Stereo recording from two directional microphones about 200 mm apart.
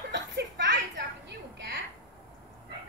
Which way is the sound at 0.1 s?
65° right (ahead or behind).